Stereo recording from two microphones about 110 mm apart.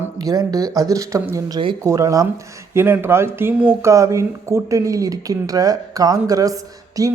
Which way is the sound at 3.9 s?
30° right (ahead or behind).